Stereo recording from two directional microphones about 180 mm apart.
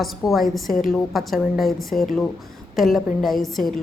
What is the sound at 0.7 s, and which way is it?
Speech, 50° left (ahead or behind).